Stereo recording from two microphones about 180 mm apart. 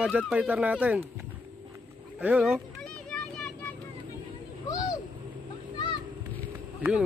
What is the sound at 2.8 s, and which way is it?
Children playing, 5° left (ahead or behind).